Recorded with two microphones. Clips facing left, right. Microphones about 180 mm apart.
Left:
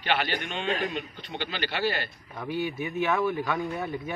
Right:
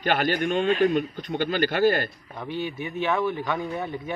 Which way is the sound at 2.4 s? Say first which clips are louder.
Even; 10° left (ahead or behind).